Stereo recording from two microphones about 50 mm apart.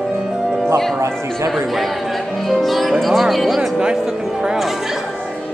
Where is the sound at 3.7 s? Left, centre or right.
Centre.